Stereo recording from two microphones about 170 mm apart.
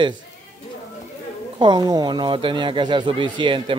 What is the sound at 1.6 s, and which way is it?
Speech, 25° right (ahead or behind).